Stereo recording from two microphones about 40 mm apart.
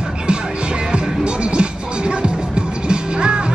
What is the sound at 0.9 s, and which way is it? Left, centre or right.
Music, right.